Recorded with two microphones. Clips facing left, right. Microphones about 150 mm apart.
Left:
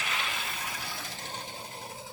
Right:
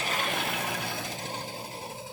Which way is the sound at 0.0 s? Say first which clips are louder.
Right 5 dB; 45° right (ahead or behind).